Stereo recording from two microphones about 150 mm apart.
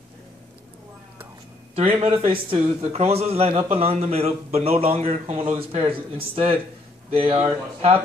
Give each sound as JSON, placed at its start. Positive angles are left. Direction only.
{"t": 2.0, "sound": "a man's voice", "side_deg": -35}